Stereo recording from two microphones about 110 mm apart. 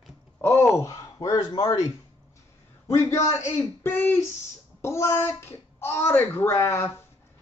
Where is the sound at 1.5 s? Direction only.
50° left (ahead or behind).